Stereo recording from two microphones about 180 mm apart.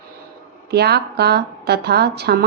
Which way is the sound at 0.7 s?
65° right (ahead or behind).